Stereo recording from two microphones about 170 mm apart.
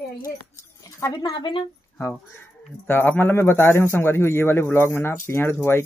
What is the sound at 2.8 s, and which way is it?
Speech, 10° left (ahead or behind).